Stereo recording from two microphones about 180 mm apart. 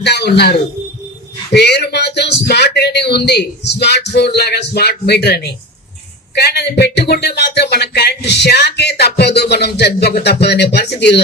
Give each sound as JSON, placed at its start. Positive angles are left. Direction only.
{"t": 0.0, "sound": "a man's voice", "side_deg": 70}
{"t": 1.5, "sound": "speech", "side_deg": 65}